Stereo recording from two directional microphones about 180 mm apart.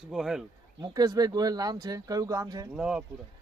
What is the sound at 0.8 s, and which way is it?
A man's voice, 20° right (ahead or behind).